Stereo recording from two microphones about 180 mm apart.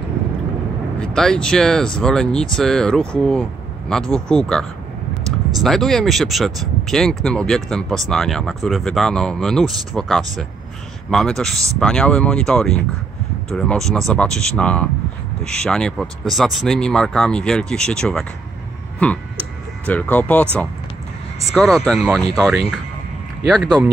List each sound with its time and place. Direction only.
0.9 s speech: 5° left (ahead or behind)
18.9 s a sound: 5° left (ahead or behind)
19.9 s speech: 10° left (ahead or behind)